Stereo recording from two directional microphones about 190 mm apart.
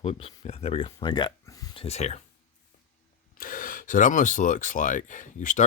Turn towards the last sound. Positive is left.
turn(degrees=40)  # may be behind; listen again after turning